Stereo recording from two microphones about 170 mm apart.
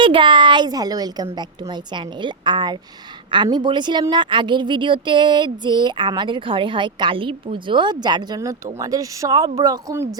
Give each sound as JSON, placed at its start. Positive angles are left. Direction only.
{"t": 0.0, "sound": "a woman's voice", "side_deg": -30}